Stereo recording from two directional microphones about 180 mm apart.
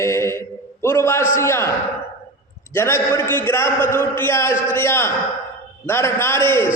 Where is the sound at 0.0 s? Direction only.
15° left (ahead or behind).